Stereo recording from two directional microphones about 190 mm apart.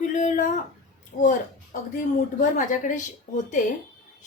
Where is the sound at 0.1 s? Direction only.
40° left (ahead or behind).